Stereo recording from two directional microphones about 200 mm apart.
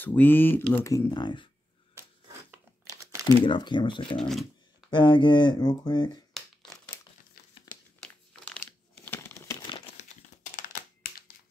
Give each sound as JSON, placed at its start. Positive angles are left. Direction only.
{"t": 0.0, "sound": "speech", "side_deg": 10}
{"t": 2.5, "sound": "a sound", "side_deg": -15}
{"t": 3.4, "sound": "speech", "side_deg": 25}
{"t": 4.2, "sound": "speech", "side_deg": 0}
{"t": 4.8, "sound": "speech", "side_deg": 25}
{"t": 6.3, "sound": "crumpling", "side_deg": 0}
{"t": 8.0, "sound": "crumpling", "side_deg": 5}
{"t": 10.5, "sound": "computer keyboard", "side_deg": 45}